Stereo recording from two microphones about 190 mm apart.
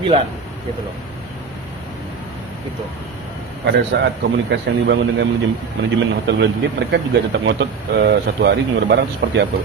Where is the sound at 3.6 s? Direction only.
65° right (ahead or behind).